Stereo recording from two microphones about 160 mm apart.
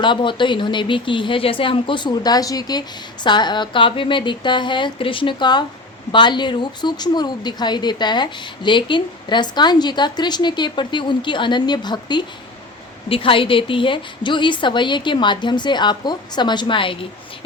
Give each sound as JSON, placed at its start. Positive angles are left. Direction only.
{"t": 0.0, "sound": "speech", "side_deg": 30}